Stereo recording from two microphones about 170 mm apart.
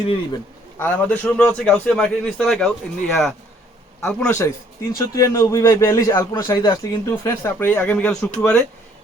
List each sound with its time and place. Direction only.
0.8 s a man's voice: 10° left (ahead or behind)
4.4 s a man's voice: 15° left (ahead or behind)